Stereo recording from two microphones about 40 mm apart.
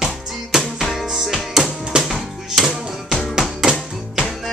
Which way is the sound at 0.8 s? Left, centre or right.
Centre.